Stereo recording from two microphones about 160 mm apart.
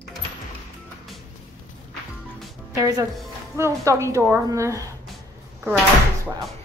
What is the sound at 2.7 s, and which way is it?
A woman's voice, 20° right (ahead or behind).